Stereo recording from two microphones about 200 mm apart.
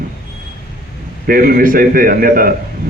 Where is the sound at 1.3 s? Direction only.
45° right (ahead or behind).